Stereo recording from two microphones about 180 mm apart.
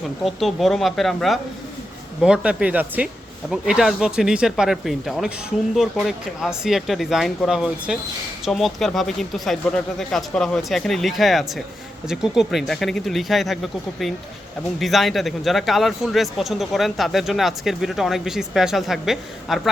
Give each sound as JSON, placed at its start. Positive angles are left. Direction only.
{"t": 0.3, "sound": "speech", "side_deg": 0}